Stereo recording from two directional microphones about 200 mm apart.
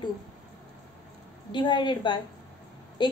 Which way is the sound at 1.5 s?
20° left (ahead or behind).